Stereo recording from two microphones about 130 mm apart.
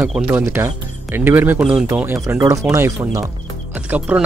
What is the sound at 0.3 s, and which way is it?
Speech, 15° right (ahead or behind).